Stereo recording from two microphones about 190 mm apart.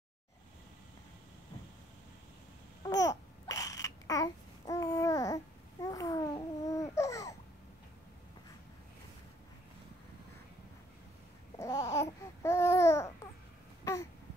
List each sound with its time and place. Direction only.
2.8 s babbling: 20° left (ahead or behind)
11.5 s babbling: 15° left (ahead or behind)